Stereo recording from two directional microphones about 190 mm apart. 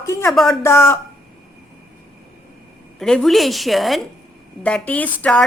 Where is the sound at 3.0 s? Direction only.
Centre (ahead or behind).